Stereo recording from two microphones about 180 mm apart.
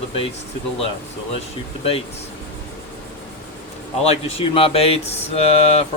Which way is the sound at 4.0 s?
35° left (ahead or behind).